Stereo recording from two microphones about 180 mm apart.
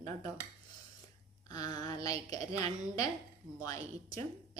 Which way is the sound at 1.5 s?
20° left (ahead or behind).